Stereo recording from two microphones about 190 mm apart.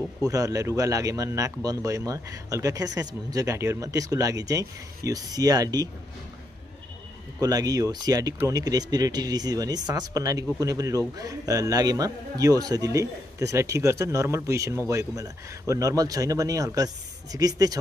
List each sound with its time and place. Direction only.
0.2 s a man's voice: 15° right (ahead or behind)
7.3 s a man's voice: 20° right (ahead or behind)